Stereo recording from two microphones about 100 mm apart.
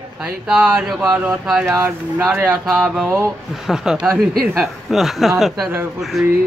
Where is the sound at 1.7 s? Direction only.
25° right (ahead or behind).